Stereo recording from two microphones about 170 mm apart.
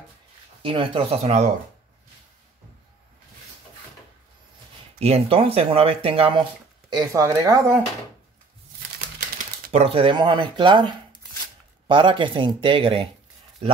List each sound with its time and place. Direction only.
0.6 s speech: 30° right (ahead or behind)
4.9 s speech: 35° right (ahead or behind)
6.9 s speech: 20° right (ahead or behind)
9.7 s speech: 35° right (ahead or behind)